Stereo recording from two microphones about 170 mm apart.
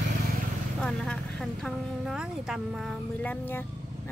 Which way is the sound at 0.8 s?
5° left (ahead or behind).